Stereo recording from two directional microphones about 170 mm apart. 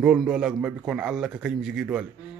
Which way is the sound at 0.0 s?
5° right (ahead or behind).